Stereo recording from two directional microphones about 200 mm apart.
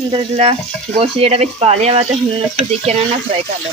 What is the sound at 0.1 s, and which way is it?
Speech, 25° right (ahead or behind).